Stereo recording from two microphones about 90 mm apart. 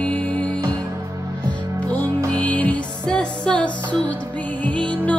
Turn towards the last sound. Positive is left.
turn(degrees=15)  # may be behind; listen again after turning